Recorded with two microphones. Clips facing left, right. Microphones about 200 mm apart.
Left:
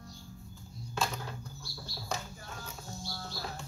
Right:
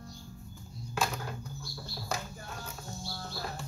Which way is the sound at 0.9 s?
10° right (ahead or behind).